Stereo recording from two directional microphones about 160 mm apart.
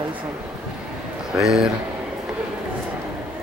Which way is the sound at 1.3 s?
5° right (ahead or behind).